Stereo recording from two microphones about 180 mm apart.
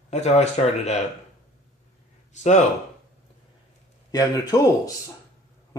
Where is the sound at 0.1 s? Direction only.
40° left (ahead or behind).